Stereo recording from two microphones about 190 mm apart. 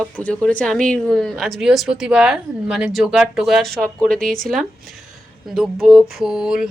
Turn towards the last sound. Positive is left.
turn(degrees=-5)  # may be behind; listen again after turning